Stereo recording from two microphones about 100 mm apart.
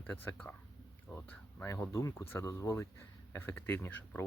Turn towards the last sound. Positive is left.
turn(degrees=20)  # may be behind; listen again after turning